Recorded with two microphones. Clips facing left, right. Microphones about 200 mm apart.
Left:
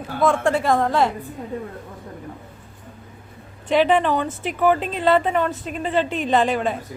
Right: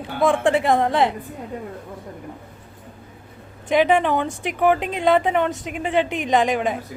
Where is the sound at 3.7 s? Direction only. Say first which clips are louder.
Even; 10° right (ahead or behind).